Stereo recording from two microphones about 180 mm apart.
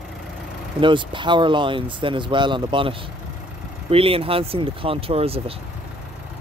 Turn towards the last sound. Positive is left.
turn(degrees=-30)  # may be behind; listen again after turning